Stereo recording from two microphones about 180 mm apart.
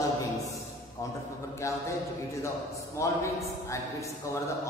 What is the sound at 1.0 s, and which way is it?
Speech, 15° left (ahead or behind).